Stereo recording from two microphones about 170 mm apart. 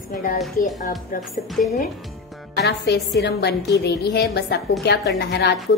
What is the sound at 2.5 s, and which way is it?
A woman's voice, 75° left (ahead or behind).